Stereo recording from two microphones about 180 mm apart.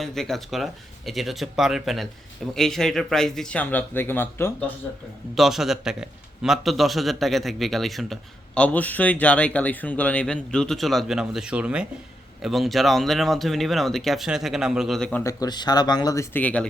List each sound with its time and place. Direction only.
0.0 s a man's voice: centre (ahead or behind)
5.3 s a man's voice: centre (ahead or behind)
15.2 s speech: 20° left (ahead or behind)